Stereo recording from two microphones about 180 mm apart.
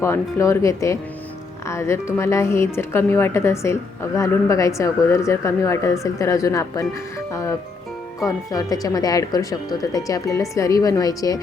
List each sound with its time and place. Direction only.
0.0 s speech: 15° left (ahead or behind)
8.2 s speech: 20° left (ahead or behind)